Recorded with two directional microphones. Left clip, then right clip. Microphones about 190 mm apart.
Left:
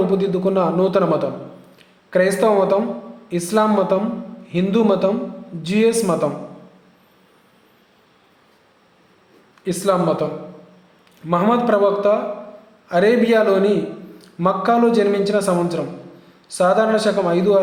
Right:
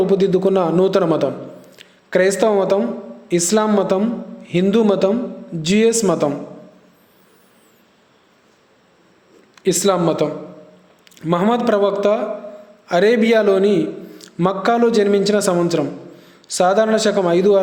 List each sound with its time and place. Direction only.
0.1 s a woman's voice: 30° right (ahead or behind)
9.6 s speech: 35° right (ahead or behind)
11.3 s speech: 35° right (ahead or behind)